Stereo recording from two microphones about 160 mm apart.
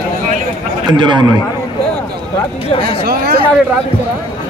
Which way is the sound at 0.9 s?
30° right (ahead or behind).